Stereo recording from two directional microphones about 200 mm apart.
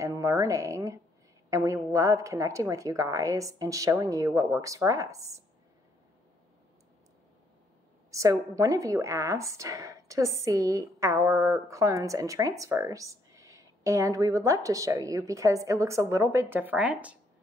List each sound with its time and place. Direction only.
0.0 s a woman's voice: 15° right (ahead or behind)
8.1 s a woman's voice: 15° right (ahead or behind)